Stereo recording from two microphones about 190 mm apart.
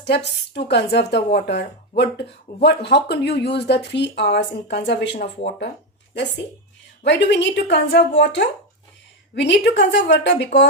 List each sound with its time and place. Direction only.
0.5 s speech: 65° left (ahead or behind)
7.0 s a woman's voice: 65° left (ahead or behind)